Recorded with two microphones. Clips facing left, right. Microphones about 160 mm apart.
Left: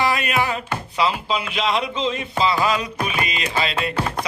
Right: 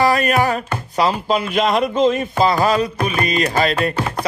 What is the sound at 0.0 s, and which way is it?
Speech, 40° right (ahead or behind).